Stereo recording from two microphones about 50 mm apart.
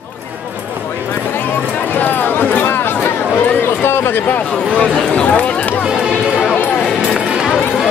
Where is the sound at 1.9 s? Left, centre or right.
Left.